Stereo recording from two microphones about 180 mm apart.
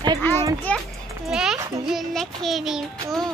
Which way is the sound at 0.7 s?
10° left (ahead or behind).